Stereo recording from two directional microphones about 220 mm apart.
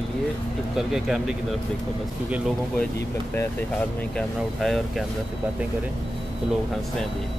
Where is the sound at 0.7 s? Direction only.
Centre (ahead or behind).